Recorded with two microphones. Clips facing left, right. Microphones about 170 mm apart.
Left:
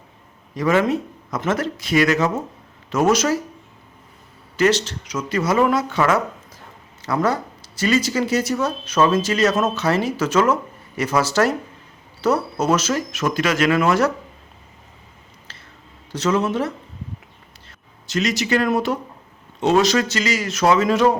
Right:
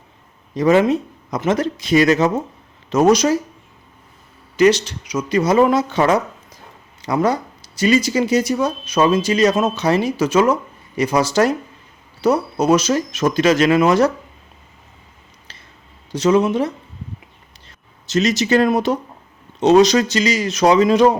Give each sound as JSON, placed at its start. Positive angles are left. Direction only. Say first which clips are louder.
{"t": 0.5, "sound": "speech", "louder": "right 4 dB", "side_deg": -20}
{"t": 4.5, "sound": "speech", "louder": "right 4 dB", "side_deg": -15}
{"t": 16.1, "sound": "speech", "louder": "right 5 dB", "side_deg": -15}